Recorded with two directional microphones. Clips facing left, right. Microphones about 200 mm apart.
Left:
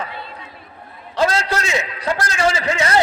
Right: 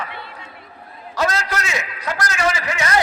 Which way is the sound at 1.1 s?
30° left (ahead or behind).